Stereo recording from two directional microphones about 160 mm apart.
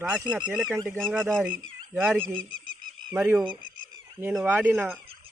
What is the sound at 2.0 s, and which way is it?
Speech, 10° right (ahead or behind).